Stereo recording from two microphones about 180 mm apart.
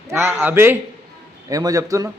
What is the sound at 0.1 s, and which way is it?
A man's voice, 10° right (ahead or behind).